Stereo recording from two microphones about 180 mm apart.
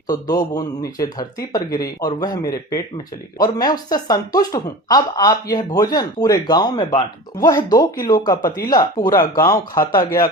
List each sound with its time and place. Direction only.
0.1 s speech: 20° left (ahead or behind)